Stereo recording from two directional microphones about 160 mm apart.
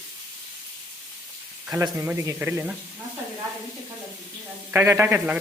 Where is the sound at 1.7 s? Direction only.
15° right (ahead or behind).